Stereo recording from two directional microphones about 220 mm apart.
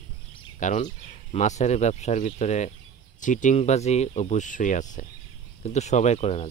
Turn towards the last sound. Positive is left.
turn(degrees=30)  # may be behind; listen again after turning